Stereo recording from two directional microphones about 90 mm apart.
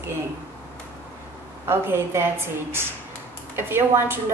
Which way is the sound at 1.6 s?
25° right (ahead or behind).